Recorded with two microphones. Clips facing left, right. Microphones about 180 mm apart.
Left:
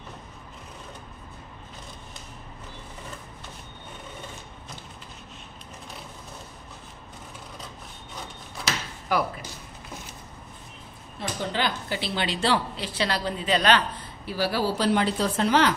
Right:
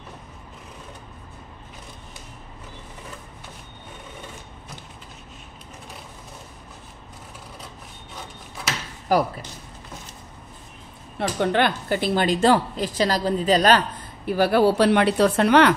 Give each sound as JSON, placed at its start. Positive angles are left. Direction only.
{"t": 9.1, "sound": "speech", "side_deg": -40}
{"t": 11.1, "sound": "a woman's voice", "side_deg": -65}